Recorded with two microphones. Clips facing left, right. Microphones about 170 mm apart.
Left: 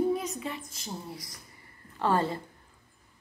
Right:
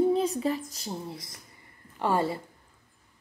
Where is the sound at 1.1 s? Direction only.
25° right (ahead or behind).